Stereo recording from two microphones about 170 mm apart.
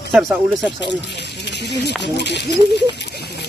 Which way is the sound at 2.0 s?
90° left.